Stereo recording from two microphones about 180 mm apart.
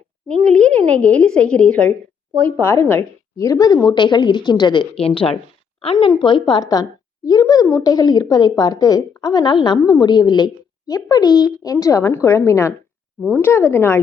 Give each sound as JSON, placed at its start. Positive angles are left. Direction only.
{"t": 0.3, "sound": "a woman's voice", "side_deg": 5}